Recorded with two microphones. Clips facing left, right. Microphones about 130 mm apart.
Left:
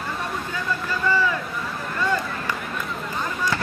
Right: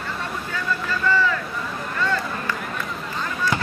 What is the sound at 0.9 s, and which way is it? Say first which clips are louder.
Vehicle: right 1 dB; 15° left (ahead or behind).